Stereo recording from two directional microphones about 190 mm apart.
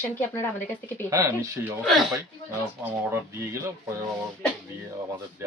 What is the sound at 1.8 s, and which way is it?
Speech, centre (ahead or behind).